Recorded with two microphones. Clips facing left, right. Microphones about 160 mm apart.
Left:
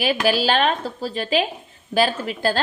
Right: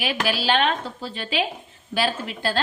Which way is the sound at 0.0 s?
40° left (ahead or behind).